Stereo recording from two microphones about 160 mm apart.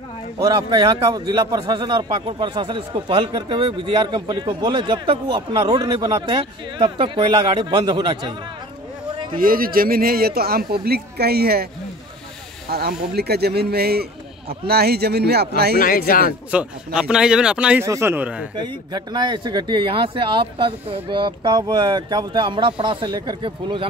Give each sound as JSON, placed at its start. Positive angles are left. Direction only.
{"t": 0.4, "sound": "a man's voice", "side_deg": -25}
{"t": 9.3, "sound": "speech", "side_deg": -65}
{"t": 12.6, "sound": "speech", "side_deg": -75}
{"t": 15.8, "sound": "speech", "side_deg": 60}
{"t": 16.5, "sound": "speech", "side_deg": -5}
{"t": 17.8, "sound": "speech", "side_deg": -15}
{"t": 18.6, "sound": "a man's voice", "side_deg": -25}